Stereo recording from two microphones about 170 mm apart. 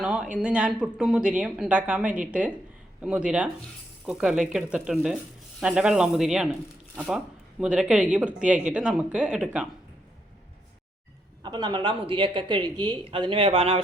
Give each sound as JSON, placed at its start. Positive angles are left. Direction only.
{"t": 0.0, "sound": "a woman's voice", "side_deg": -5}
{"t": 11.4, "sound": "speech", "side_deg": -25}